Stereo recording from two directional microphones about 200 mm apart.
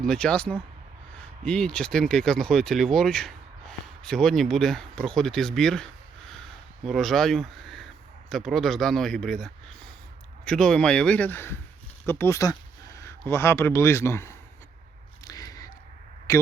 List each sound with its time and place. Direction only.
0.1 s speech: 5° left (ahead or behind)
15.2 s a sound: 20° left (ahead or behind)
16.3 s speech: 15° left (ahead or behind)